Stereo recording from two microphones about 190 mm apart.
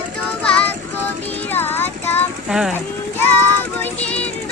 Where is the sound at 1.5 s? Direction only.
10° left (ahead or behind).